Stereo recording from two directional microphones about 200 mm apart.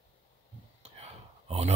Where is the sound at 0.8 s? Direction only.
30° right (ahead or behind).